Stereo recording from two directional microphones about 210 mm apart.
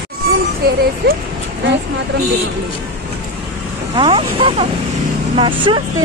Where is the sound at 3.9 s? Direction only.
25° right (ahead or behind).